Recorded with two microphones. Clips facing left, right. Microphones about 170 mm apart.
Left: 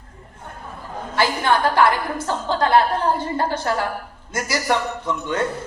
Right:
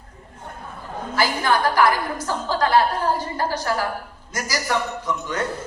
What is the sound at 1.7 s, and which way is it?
A man's voice, 25° left (ahead or behind).